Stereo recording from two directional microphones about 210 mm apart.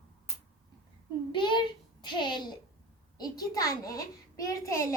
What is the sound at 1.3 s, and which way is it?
A child's voice, 20° left (ahead or behind).